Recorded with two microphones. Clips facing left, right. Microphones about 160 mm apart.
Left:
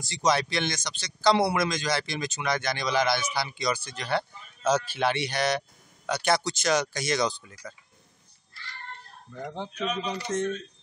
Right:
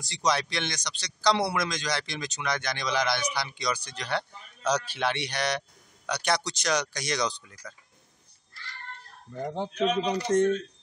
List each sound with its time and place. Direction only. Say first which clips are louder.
0.0 s speech: left 2 dB; centre (ahead or behind)
9.3 s speech: right 4 dB; 35° right (ahead or behind)